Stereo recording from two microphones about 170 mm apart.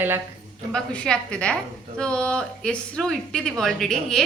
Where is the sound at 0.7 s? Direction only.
5° left (ahead or behind).